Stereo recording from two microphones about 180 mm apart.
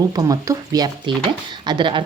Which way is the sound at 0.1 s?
20° right (ahead or behind).